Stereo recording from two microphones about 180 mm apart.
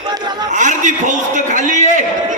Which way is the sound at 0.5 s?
45° right (ahead or behind).